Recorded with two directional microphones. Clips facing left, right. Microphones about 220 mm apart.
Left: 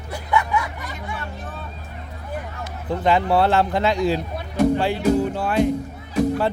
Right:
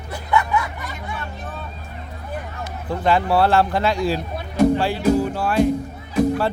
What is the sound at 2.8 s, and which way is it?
A man's voice, 20° left (ahead or behind).